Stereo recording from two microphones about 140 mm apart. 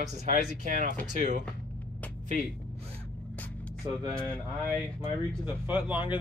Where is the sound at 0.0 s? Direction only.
60° right (ahead or behind).